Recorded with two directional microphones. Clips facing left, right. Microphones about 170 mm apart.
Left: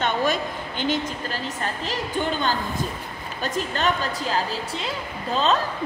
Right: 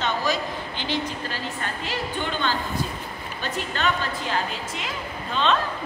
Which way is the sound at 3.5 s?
40° left (ahead or behind).